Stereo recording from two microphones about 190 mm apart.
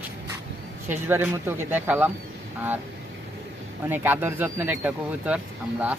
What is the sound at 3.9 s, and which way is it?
Speech, 10° right (ahead or behind).